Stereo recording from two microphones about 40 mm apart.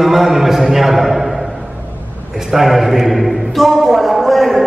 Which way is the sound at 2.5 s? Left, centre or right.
Centre.